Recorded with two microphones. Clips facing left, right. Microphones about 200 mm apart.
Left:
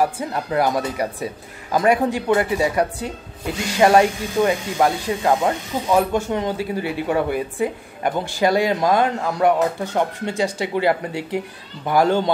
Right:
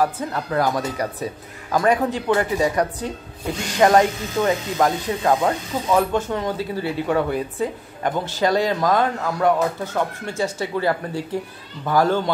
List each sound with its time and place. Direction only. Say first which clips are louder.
0.0 s speech: left 1 dB; 10° left (ahead or behind)